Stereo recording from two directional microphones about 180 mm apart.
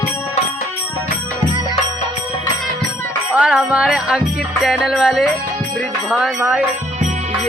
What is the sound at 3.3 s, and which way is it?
Music, 5° right (ahead or behind).